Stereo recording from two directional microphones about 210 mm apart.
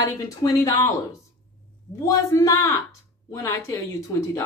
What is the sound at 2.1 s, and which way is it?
A woman's voice, 15° left (ahead or behind).